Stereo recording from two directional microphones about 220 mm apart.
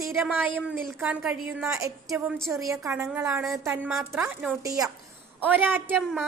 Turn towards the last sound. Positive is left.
turn(degrees=-5)  # may be behind; listen again after turning